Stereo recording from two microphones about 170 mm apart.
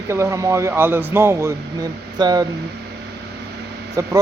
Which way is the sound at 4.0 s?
20° right (ahead or behind).